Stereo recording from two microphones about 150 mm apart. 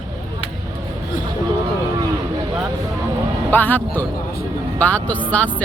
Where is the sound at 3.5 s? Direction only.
15° left (ahead or behind).